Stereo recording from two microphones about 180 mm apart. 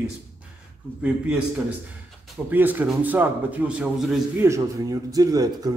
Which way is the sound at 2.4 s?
10° right (ahead or behind).